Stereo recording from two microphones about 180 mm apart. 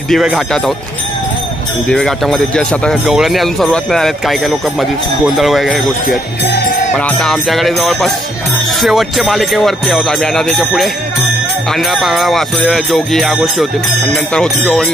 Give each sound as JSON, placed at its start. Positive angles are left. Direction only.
{"t": 0.1, "sound": "speech", "side_deg": 0}
{"t": 1.9, "sound": "speech", "side_deg": 5}
{"t": 6.0, "sound": "speech", "side_deg": 65}
{"t": 7.0, "sound": "speech", "side_deg": 5}